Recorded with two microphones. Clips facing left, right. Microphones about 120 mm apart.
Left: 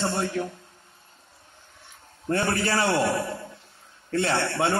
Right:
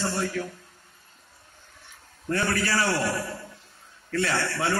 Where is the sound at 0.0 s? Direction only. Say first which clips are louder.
Left 2 dB; 25° left (ahead or behind).